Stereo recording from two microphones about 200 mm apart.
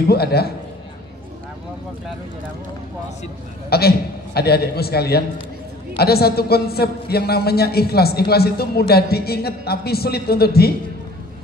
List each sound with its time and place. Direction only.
0.0 s a man's voice: 50° left (ahead or behind)
3.7 s a man's voice: 50° left (ahead or behind)